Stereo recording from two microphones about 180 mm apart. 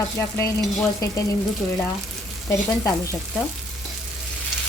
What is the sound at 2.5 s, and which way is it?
Frying, 15° left (ahead or behind).